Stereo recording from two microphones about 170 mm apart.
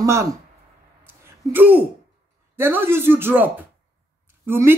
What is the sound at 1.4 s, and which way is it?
A woman's voice, 10° right (ahead or behind).